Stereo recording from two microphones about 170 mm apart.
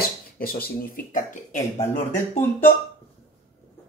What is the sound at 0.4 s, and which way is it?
Speech, 60° left (ahead or behind).